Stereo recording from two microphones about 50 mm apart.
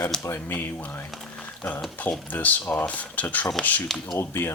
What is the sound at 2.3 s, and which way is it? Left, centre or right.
Speech, left.